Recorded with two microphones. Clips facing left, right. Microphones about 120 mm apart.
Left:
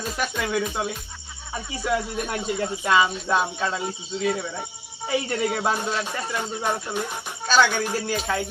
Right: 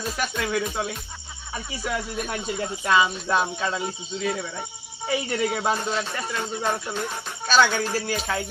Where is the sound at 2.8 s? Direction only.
Centre (ahead or behind).